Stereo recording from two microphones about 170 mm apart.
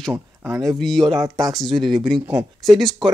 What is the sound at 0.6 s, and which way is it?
Speech, centre (ahead or behind).